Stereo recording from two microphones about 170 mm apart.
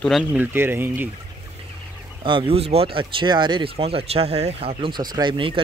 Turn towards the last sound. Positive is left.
turn(degrees=-30)  # may be behind; listen again after turning